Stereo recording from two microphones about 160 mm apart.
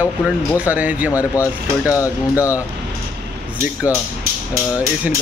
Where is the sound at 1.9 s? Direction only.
20° left (ahead or behind).